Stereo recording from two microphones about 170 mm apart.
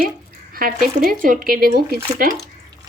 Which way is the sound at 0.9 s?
55° right (ahead or behind).